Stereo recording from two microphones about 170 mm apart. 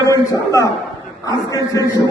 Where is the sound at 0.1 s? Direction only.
20° left (ahead or behind).